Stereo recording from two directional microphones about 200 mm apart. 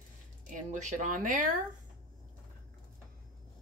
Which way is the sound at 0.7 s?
40° right (ahead or behind).